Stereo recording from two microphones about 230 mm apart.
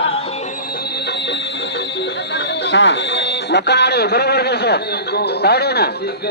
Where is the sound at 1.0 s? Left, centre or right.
Left.